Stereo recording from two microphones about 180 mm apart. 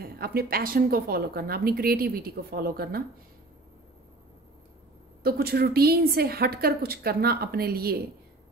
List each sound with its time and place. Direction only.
0.0 s a woman's voice: 60° right (ahead or behind)
5.2 s a woman's voice: 60° right (ahead or behind)